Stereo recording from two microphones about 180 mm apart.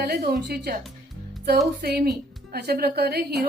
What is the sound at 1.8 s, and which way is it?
A woman's voice, 60° right (ahead or behind).